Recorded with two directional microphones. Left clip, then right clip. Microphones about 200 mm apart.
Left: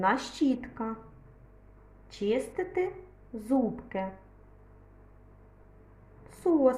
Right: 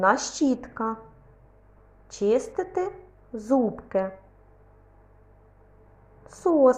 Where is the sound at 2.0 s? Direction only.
15° right (ahead or behind).